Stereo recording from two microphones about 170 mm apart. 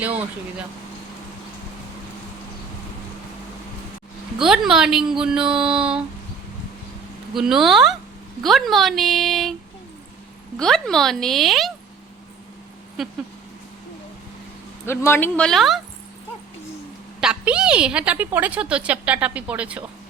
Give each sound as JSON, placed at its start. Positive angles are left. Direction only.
{"t": 4.4, "sound": "speech", "side_deg": -5}
{"t": 7.3, "sound": "speech", "side_deg": 0}
{"t": 10.6, "sound": "speech", "side_deg": 5}
{"t": 13.0, "sound": "speech", "side_deg": 0}
{"t": 14.8, "sound": "speech", "side_deg": 15}
{"t": 17.2, "sound": "a woman's voice", "side_deg": -5}